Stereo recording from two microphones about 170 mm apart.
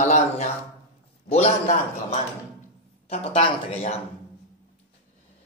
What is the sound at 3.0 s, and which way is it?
Speech, 35° left (ahead or behind).